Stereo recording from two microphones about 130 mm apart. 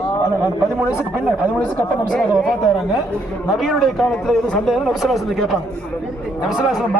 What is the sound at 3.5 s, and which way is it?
A man's voice, centre (ahead or behind).